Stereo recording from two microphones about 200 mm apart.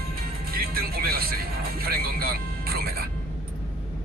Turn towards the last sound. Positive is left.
turn(degrees=-50)  # may be behind; listen again after turning